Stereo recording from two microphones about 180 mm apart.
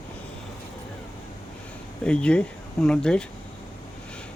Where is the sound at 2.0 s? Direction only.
5° left (ahead or behind).